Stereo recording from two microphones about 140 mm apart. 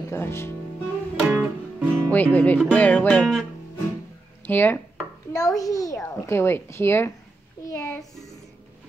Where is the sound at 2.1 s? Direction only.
10° left (ahead or behind).